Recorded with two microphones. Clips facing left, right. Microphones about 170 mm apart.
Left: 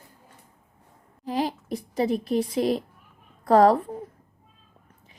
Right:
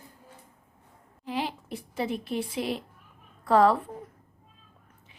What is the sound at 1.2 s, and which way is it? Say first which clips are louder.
A woman's voice: left 5 dB; 40° left (ahead or behind).